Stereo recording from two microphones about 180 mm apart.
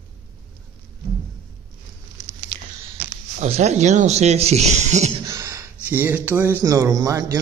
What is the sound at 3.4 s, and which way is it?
Speech, 40° right (ahead or behind).